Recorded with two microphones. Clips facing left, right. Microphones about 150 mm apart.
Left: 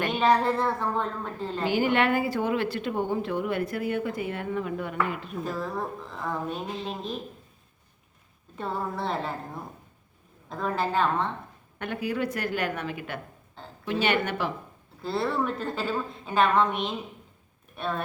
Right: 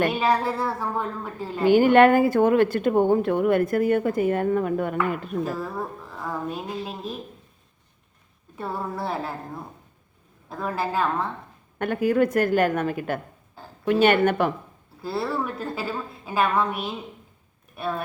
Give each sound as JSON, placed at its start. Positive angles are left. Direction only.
{"t": 0.1, "sound": "a woman's voice", "side_deg": -5}
{"t": 1.6, "sound": "a woman's voice", "side_deg": -50}
{"t": 6.1, "sound": "a woman's voice", "side_deg": -5}
{"t": 8.5, "sound": "a woman's voice", "side_deg": -5}
{"t": 10.5, "sound": "a woman's voice", "side_deg": -5}
{"t": 11.8, "sound": "a woman's voice", "side_deg": -50}
{"t": 15.0, "sound": "a woman's voice", "side_deg": -5}